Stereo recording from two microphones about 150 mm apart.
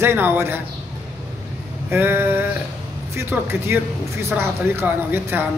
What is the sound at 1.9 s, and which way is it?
Speech, 15° right (ahead or behind).